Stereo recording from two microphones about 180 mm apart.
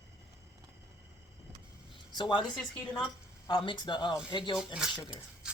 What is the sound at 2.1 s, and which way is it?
Speech, 25° left (ahead or behind).